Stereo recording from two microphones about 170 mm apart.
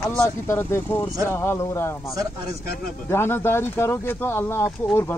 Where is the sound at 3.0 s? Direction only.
15° left (ahead or behind).